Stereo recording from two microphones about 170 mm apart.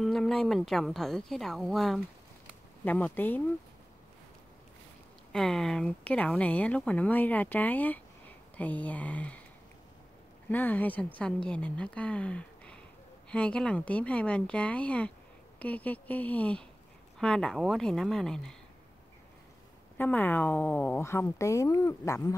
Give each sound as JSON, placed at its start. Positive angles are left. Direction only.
{"t": 0.0, "sound": "a woman's voice", "side_deg": 0}
{"t": 5.3, "sound": "speech", "side_deg": 5}
{"t": 10.5, "sound": "a woman's voice", "side_deg": 10}
{"t": 20.0, "sound": "speech", "side_deg": 10}